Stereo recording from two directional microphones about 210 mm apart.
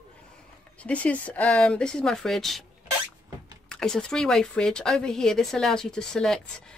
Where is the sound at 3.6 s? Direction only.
5° left (ahead or behind).